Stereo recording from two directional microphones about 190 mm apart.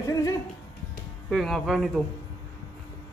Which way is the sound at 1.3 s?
Centre (ahead or behind).